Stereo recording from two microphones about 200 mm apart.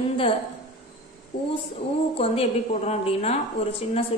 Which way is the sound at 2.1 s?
30° left (ahead or behind).